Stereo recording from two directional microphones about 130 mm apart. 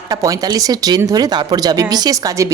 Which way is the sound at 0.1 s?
30° right (ahead or behind).